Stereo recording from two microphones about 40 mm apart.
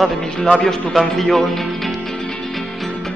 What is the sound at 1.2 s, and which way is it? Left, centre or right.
Speech, centre.